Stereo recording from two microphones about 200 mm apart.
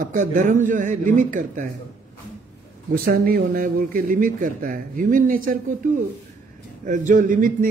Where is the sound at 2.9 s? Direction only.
50° right (ahead or behind).